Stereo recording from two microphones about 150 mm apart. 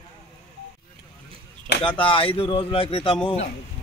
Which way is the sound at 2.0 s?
35° left (ahead or behind).